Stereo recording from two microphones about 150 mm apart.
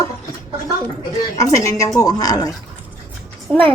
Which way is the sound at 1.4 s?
20° left (ahead or behind).